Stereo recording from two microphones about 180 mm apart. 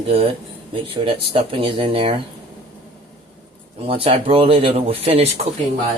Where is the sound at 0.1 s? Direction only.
30° right (ahead or behind).